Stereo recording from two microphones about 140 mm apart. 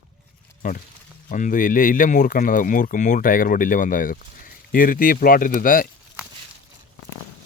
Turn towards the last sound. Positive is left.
turn(degrees=80)